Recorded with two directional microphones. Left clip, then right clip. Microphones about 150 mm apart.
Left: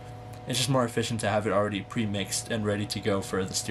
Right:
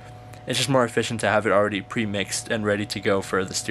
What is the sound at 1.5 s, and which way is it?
Speech, 25° right (ahead or behind).